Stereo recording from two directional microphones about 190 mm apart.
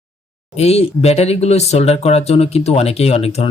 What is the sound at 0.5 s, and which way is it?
Speech, 35° left (ahead or behind).